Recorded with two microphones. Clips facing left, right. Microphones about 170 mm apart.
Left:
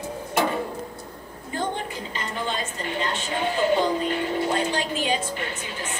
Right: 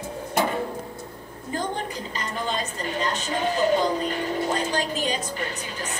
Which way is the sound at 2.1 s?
40° right (ahead or behind).